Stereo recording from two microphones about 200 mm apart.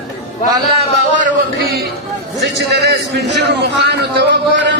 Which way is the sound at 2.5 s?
60° right (ahead or behind).